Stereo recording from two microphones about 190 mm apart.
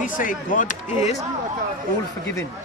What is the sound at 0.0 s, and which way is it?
Speech, 45° left (ahead or behind).